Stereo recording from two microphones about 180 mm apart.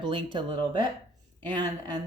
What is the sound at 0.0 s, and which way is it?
Speech, 25° right (ahead or behind).